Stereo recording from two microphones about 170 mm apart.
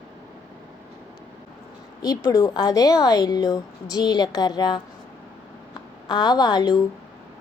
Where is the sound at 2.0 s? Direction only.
20° left (ahead or behind).